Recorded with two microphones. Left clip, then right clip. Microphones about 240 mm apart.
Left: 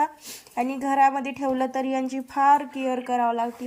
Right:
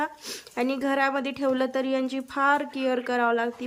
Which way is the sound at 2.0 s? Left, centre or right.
Right.